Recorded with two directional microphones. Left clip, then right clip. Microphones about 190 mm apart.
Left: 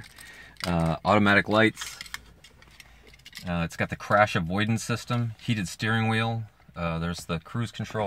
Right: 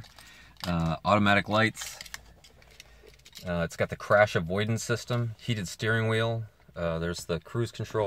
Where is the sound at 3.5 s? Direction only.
10° right (ahead or behind).